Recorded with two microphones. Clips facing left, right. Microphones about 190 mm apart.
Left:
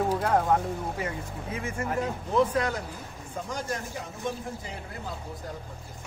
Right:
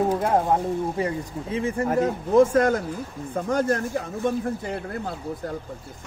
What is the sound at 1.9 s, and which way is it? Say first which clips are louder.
Speech: right 7 dB; 45° right (ahead or behind).